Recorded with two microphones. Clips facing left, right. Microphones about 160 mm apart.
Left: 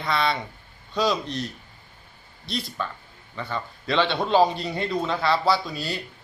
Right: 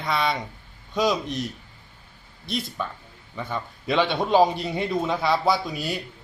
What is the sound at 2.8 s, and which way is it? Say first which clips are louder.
Speech: even; 10° right (ahead or behind).